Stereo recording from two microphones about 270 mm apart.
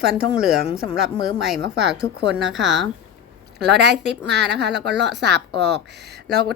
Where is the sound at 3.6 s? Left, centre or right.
Right.